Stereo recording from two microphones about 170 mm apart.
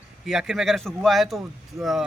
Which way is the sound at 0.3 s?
Centre (ahead or behind).